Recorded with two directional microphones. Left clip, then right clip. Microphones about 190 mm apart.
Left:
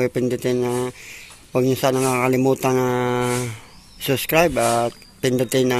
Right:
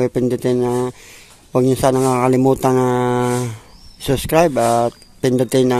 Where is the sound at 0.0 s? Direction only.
25° right (ahead or behind).